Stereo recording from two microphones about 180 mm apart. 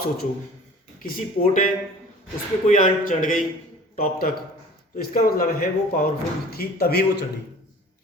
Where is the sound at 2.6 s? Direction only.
45° left (ahead or behind).